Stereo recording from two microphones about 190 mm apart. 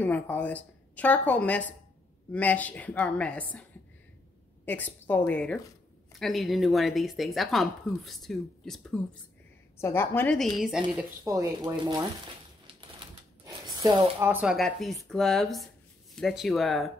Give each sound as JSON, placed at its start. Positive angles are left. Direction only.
{"t": 0.0, "sound": "a woman's voice", "side_deg": 10}
{"t": 4.6, "sound": "a woman's voice", "side_deg": 10}
{"t": 9.8, "sound": "a woman's voice", "side_deg": 10}
{"t": 11.0, "sound": "speech", "side_deg": -15}
{"t": 13.5, "sound": "a sound", "side_deg": -20}
{"t": 14.3, "sound": "a woman's voice", "side_deg": -5}